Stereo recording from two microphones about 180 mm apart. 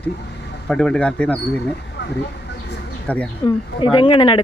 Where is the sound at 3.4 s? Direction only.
25° left (ahead or behind).